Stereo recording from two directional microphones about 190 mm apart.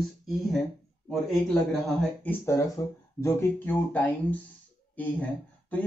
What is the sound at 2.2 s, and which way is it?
A man's voice, 15° left (ahead or behind).